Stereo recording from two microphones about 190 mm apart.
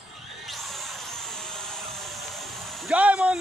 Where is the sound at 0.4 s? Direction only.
Centre (ahead or behind).